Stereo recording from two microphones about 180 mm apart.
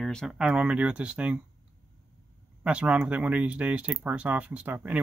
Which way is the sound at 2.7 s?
5° right (ahead or behind).